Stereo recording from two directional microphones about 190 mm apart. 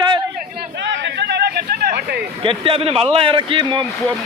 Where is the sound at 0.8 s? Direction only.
65° right (ahead or behind).